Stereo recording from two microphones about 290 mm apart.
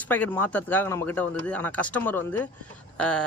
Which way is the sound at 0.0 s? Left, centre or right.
Centre.